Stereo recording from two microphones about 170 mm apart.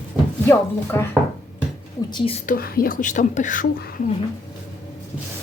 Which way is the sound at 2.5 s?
60° left (ahead or behind).